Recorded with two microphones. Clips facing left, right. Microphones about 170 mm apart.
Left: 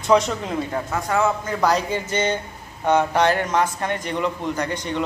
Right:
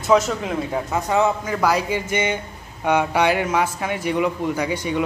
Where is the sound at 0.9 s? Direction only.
15° right (ahead or behind).